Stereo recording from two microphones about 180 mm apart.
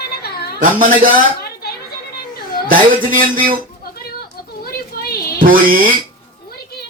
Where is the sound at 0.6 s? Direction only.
50° right (ahead or behind).